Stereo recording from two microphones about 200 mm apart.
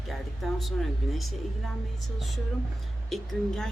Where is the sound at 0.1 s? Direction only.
Centre (ahead or behind).